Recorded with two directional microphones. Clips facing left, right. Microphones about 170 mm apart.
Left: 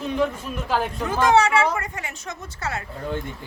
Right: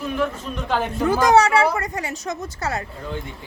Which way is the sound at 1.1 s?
40° right (ahead or behind).